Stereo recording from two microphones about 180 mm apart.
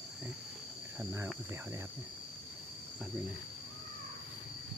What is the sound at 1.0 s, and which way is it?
Cricket, 10° right (ahead or behind).